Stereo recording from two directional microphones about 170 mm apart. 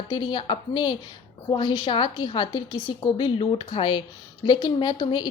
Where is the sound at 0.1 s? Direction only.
30° left (ahead or behind).